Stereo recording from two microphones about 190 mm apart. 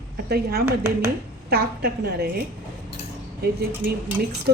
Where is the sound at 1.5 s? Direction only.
55° right (ahead or behind).